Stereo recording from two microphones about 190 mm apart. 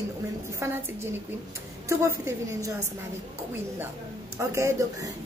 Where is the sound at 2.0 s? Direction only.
15° right (ahead or behind).